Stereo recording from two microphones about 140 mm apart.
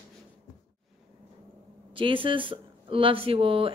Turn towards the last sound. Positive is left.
turn(degrees=-40)  # may be behind; listen again after turning